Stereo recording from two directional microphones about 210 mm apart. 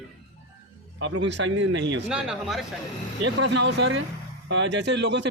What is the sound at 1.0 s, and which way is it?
A man's voice, 60° right (ahead or behind).